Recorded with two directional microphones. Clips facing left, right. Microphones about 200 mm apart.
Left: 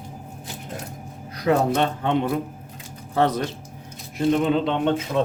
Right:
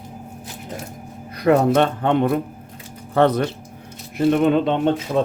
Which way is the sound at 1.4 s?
60° right (ahead or behind).